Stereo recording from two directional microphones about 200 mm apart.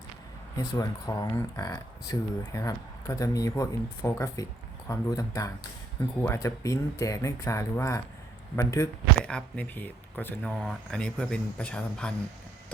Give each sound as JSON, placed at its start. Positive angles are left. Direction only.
{"t": 0.5, "sound": "speech", "side_deg": 20}